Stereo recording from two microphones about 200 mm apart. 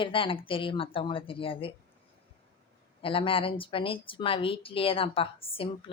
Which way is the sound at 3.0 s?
25° left (ahead or behind).